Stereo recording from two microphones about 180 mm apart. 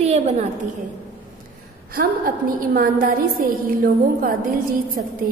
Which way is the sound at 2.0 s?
55° right (ahead or behind).